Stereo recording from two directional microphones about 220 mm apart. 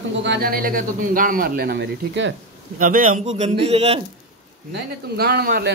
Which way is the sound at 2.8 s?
40° right (ahead or behind).